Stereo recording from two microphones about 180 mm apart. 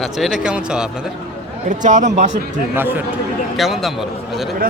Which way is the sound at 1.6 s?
40° right (ahead or behind).